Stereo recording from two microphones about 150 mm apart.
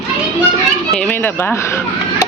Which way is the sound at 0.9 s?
10° left (ahead or behind).